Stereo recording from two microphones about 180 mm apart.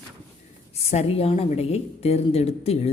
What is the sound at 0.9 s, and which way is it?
A woman's voice, 35° left (ahead or behind).